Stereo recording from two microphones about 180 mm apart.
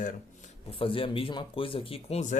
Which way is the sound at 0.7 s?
30° left (ahead or behind).